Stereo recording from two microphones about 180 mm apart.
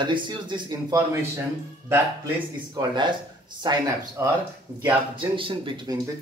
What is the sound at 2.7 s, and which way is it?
Speech, 25° right (ahead or behind).